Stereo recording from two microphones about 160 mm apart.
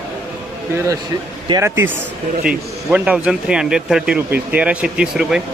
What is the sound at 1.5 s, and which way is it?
Speech, 20° right (ahead or behind).